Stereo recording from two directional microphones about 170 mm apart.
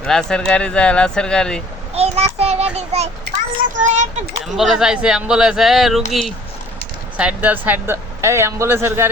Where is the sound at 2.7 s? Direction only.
40° right (ahead or behind).